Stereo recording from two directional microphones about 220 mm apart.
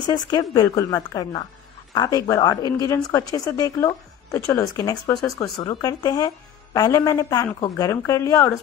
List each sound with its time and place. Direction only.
0.0 s a woman's voice: 20° left (ahead or behind)